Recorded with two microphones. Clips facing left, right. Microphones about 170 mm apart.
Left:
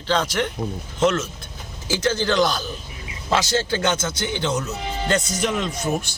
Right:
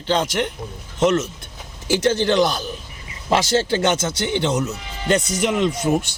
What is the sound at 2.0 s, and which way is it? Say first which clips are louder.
A man's voice: right 2 dB; 20° right (ahead or behind).